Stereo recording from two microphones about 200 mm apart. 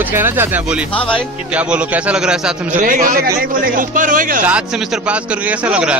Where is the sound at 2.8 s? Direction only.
40° right (ahead or behind).